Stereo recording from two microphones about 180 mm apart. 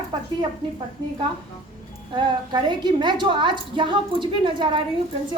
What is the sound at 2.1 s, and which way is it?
A woman's voice, 25° right (ahead or behind).